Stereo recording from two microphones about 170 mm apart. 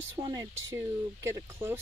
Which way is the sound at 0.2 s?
20° right (ahead or behind).